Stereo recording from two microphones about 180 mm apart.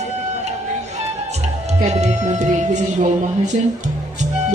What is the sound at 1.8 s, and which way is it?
A man's voice, 40° right (ahead or behind).